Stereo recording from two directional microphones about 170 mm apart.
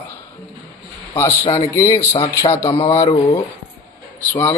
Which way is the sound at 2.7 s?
35° left (ahead or behind).